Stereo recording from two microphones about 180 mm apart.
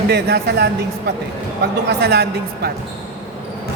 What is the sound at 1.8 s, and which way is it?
Speech, 65° right (ahead or behind).